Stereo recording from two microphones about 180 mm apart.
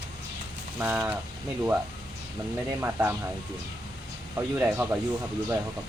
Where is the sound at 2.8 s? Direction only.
10° right (ahead or behind).